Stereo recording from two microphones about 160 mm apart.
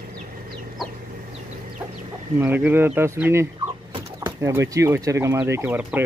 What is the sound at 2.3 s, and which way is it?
Speech, 10° right (ahead or behind).